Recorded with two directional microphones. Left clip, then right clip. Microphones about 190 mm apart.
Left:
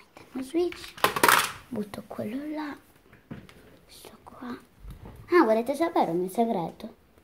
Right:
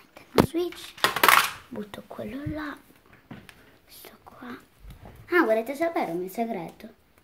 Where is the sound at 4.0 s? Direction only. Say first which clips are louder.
Left 1 dB; centre (ahead or behind).